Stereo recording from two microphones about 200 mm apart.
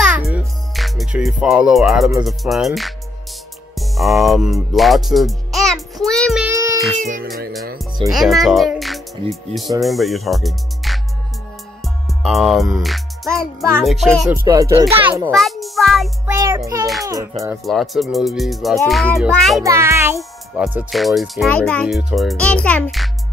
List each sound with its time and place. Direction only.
0.0 s a child's voice: 5° right (ahead or behind)
3.7 s music: centre (ahead or behind)
6.4 s music: 15° right (ahead or behind)
7.0 s music: 45° right (ahead or behind)
8.1 s a child's voice: centre (ahead or behind)
11.8 s music: centre (ahead or behind)
13.6 s a child's voice: centre (ahead or behind)
14.3 s a child's voice: 15° right (ahead or behind)
15.3 s a child's voice: centre (ahead or behind)
16.3 s a child's voice: 15° right (ahead or behind)
17.6 s a child's voice: centre (ahead or behind)
19.6 s a child's voice: 15° right (ahead or behind)